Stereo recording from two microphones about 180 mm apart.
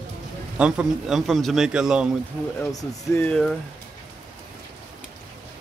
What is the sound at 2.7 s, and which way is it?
Speech, 20° left (ahead or behind).